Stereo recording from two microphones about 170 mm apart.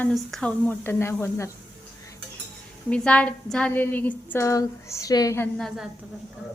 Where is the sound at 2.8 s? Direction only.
5° left (ahead or behind).